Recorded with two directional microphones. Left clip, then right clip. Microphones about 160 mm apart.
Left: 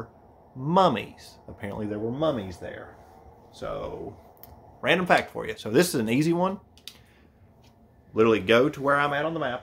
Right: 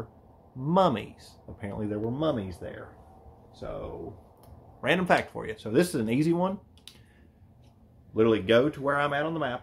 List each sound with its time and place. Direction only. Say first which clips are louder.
0.7 s a man's voice: left 3 dB; 5° left (ahead or behind)
3.6 s speech: left 5 dB; 10° left (ahead or behind)
4.8 s speech: left 3 dB; 10° right (ahead or behind)
5.4 s speech: left 3 dB; 10° left (ahead or behind)
5.7 s speech: left 3 dB; 20° left (ahead or behind)
8.1 s speech: left 2 dB; 15° left (ahead or behind)
9.1 s speech: left 2 dB; 10° right (ahead or behind)